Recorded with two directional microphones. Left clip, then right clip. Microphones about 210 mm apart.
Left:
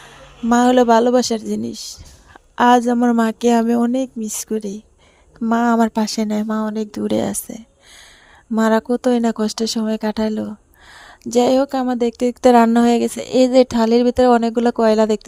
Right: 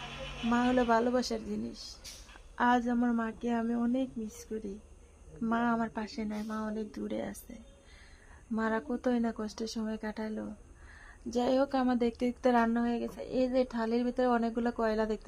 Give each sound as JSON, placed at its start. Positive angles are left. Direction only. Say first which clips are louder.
{"t": 0.5, "sound": "speech", "louder": "left 16 dB", "side_deg": 45}